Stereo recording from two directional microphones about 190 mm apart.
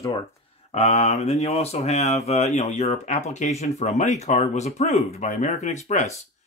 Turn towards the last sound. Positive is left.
turn(degrees=35)  # may be behind; listen again after turning